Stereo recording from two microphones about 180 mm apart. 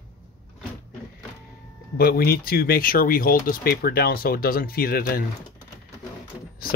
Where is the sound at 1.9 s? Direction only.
55° left (ahead or behind).